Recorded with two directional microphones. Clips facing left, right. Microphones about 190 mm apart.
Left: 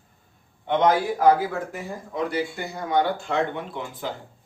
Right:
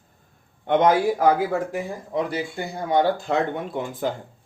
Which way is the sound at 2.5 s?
30° right (ahead or behind).